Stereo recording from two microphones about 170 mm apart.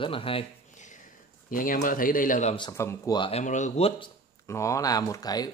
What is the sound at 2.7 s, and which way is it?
Speech, 15° left (ahead or behind).